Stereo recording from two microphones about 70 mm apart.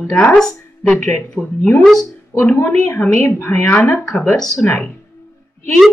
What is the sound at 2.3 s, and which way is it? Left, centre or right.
A woman's voice, left.